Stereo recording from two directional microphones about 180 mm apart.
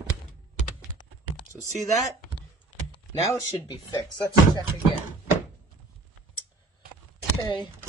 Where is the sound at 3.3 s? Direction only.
20° left (ahead or behind).